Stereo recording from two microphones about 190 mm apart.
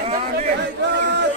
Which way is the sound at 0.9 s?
65° right (ahead or behind).